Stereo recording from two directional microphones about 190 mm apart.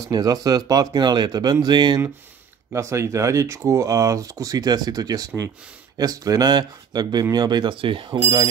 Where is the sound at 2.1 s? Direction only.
10° right (ahead or behind).